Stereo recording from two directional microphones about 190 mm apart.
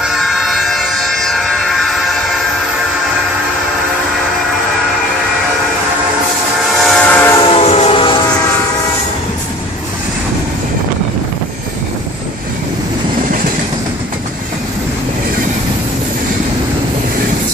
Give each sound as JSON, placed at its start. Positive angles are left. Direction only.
{"t": 0.0, "sound": "train", "side_deg": 0}
{"t": 6.8, "sound": "train", "side_deg": 5}
{"t": 7.4, "sound": "train", "side_deg": 30}